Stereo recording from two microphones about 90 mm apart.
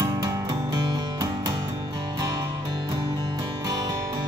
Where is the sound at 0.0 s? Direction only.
40° right (ahead or behind).